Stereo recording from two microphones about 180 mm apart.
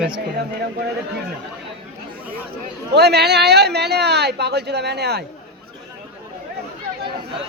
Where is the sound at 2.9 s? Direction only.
65° right (ahead or behind).